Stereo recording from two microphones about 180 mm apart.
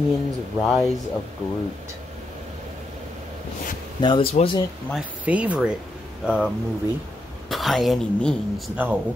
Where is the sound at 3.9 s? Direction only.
25° left (ahead or behind).